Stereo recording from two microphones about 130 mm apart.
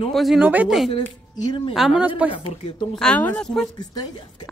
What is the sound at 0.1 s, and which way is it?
Speech, centre (ahead or behind).